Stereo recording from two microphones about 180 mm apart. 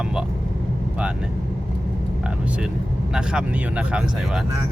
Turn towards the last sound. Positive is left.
turn(degrees=-5)  # may be behind; listen again after turning